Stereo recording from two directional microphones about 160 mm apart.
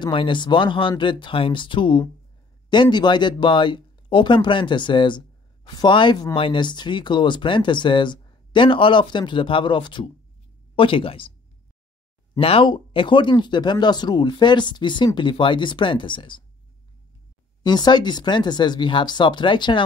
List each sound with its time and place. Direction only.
0.0 s speech: 30° left (ahead or behind)
12.4 s speech: 35° left (ahead or behind)
17.6 s speech: 25° left (ahead or behind)